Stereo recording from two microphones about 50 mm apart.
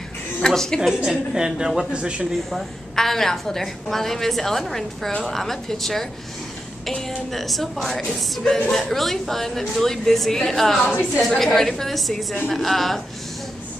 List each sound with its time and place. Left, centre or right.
0.4 s a woman's voice: centre
1.0 s a man's voice: centre
2.5 s a woman's voice: centre
8.0 s a sound: centre
8.6 s a woman's voice: centre